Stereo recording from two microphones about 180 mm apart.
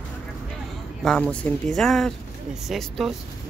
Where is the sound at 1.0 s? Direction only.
5° left (ahead or behind).